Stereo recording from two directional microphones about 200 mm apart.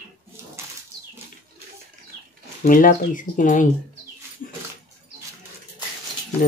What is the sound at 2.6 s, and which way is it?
Speech, 45° left (ahead or behind).